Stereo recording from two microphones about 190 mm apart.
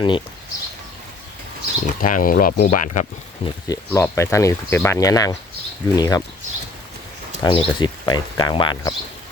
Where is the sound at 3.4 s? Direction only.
15° left (ahead or behind).